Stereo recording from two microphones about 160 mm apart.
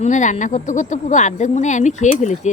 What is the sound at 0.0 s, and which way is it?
Speech, 50° left (ahead or behind).